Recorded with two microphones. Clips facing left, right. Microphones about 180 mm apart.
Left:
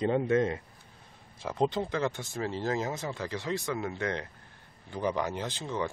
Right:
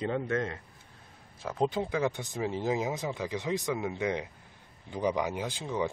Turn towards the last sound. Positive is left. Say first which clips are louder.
# right 1 dB
turn(degrees=-10)  # may be behind; listen again after turning